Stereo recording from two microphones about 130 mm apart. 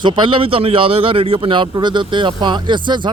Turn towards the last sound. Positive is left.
turn(degrees=-35)  # may be behind; listen again after turning